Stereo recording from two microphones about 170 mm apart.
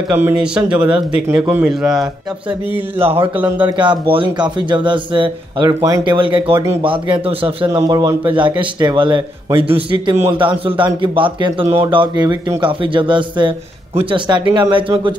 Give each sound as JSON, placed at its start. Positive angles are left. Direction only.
{"t": 0.1, "sound": "a man's voice", "side_deg": -10}
{"t": 3.0, "sound": "speech", "side_deg": -35}
{"t": 3.3, "sound": "speech", "side_deg": -10}
{"t": 3.6, "sound": "a man's voice", "side_deg": -25}